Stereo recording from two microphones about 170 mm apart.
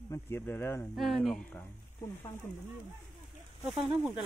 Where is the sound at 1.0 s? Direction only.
Centre (ahead or behind).